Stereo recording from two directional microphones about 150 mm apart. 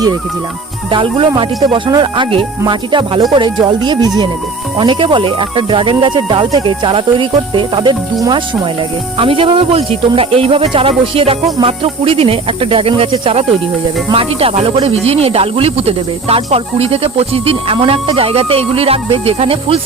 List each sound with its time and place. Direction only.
0.9 s speech: 35° right (ahead or behind)
8.2 s speech: 20° right (ahead or behind)
9.1 s speech: 35° right (ahead or behind)